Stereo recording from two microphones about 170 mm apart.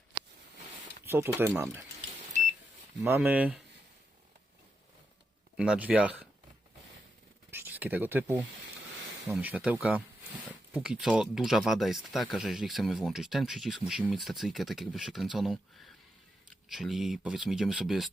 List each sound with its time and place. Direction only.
1.0 s speech: 15° right (ahead or behind)
3.0 s speech: 10° right (ahead or behind)
5.5 s speech: 5° right (ahead or behind)
7.5 s speech: 10° right (ahead or behind)